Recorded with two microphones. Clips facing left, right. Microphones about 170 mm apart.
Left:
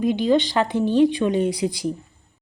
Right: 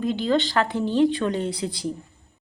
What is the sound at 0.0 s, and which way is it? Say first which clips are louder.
Speech: left 4 dB; 15° left (ahead or behind).